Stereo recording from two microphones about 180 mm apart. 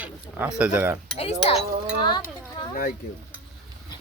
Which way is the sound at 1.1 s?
35° left (ahead or behind).